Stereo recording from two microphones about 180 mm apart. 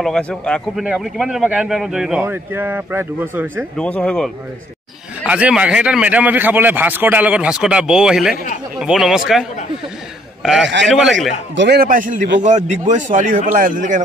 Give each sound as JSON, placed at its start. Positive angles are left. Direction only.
{"t": 0.0, "sound": "a man's voice", "side_deg": 5}
{"t": 3.7, "sound": "a man's voice", "side_deg": 5}
{"t": 10.7, "sound": "a man's voice", "side_deg": -90}
{"t": 11.5, "sound": "speech", "side_deg": -70}